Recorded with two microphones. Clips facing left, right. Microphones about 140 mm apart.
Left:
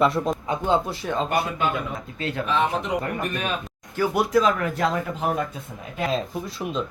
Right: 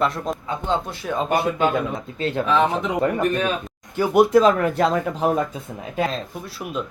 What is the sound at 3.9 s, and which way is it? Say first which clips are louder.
Speech: right 5 dB; 20° right (ahead or behind).